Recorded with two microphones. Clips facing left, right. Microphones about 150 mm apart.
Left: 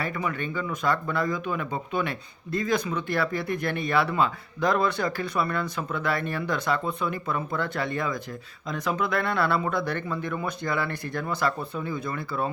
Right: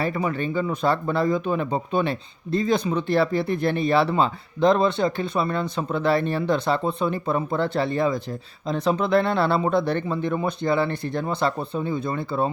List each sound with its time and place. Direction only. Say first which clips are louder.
0.0 s speech: right 5 dB; 30° right (ahead or behind)